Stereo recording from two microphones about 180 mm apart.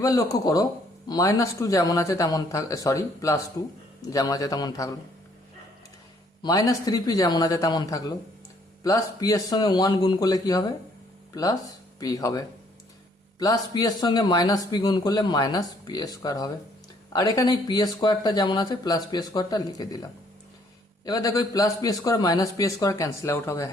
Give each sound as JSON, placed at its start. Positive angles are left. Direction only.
{"t": 0.0, "sound": "speech", "side_deg": 20}
{"t": 6.4, "sound": "speech", "side_deg": 20}
{"t": 13.4, "sound": "speech", "side_deg": 20}